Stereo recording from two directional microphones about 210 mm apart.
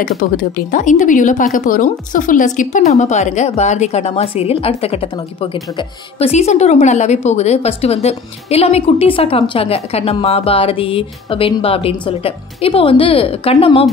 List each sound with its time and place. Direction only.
0.0 s a woman's voice: 40° left (ahead or behind); by 13.8 s 25° left (ahead or behind)